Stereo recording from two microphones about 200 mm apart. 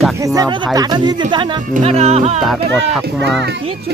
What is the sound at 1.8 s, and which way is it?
Music, 30° right (ahead or behind).